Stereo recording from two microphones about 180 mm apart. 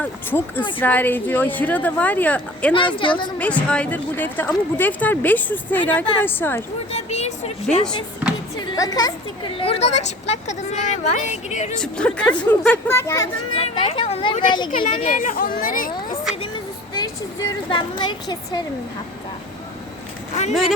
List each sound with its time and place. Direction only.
0.0 s speech: 10° left (ahead or behind)
2.7 s a woman's voice: 25° left (ahead or behind)
3.3 s speech: 5° left (ahead or behind)
6.9 s a woman's voice: 35° left (ahead or behind)
8.5 s speech: 20° left (ahead or behind)
9.6 s speech: 35° left (ahead or behind)
11.8 s speech: 5° left (ahead or behind)
13.5 s speech: 30° left (ahead or behind)
15.0 s speech: 45° left (ahead or behind)
16.9 s a woman's voice: 25° left (ahead or behind)
20.5 s speech: centre (ahead or behind)